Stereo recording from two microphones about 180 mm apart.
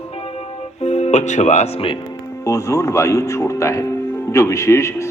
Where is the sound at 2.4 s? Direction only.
20° left (ahead or behind).